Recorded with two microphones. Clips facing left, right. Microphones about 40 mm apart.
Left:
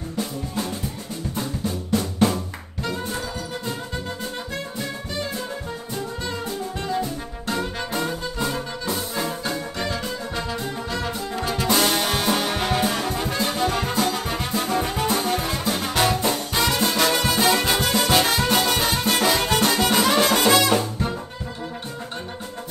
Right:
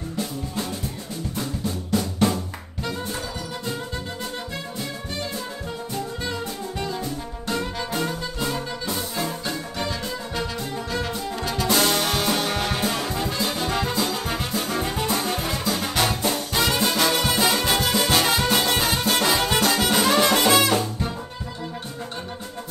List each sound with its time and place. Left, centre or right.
1.9 s drum: centre
7.9 s music: centre
13.2 s brass instrument: centre
14.4 s music: centre
16.3 s music: centre